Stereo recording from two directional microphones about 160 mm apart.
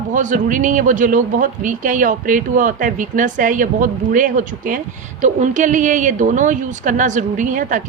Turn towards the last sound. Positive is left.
turn(degrees=-55)  # may be behind; listen again after turning